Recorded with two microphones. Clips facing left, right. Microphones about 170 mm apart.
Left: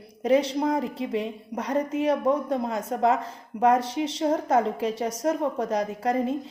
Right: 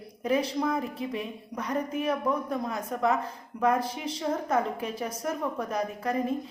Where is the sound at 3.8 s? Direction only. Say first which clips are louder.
Left 6 dB; 80° left.